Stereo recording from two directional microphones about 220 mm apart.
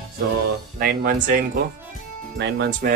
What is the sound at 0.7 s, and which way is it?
Speech, 40° right (ahead or behind).